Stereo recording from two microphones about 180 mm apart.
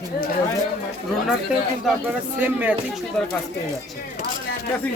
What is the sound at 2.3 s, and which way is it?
Speech, 10° right (ahead or behind).